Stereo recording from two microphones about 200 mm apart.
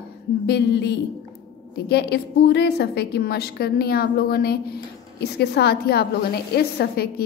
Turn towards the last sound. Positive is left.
turn(degrees=50)  # may be behind; listen again after turning